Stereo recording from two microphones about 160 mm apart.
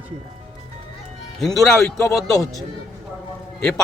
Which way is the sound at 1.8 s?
15° left (ahead or behind).